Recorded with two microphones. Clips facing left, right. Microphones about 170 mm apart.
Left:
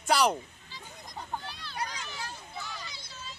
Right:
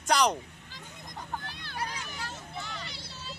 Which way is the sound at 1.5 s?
55° right (ahead or behind).